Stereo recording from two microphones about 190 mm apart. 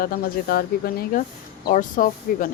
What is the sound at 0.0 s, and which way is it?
Speech, 50° left (ahead or behind).